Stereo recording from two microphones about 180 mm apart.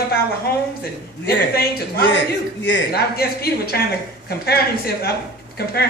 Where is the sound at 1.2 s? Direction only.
60° left (ahead or behind).